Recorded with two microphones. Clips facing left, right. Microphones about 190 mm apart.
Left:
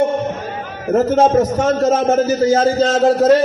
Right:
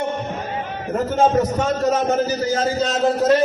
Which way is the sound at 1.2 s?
40° left (ahead or behind).